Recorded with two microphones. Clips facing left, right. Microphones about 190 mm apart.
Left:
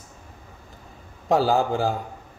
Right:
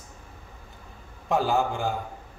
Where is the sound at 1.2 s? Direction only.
35° left (ahead or behind).